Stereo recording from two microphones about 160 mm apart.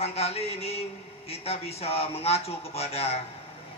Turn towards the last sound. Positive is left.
turn(degrees=40)  # may be behind; listen again after turning